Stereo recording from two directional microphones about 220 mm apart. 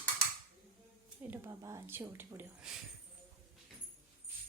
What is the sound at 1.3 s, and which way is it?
A woman's voice, 10° right (ahead or behind).